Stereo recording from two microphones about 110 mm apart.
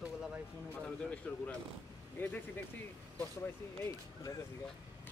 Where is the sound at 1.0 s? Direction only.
10° left (ahead or behind).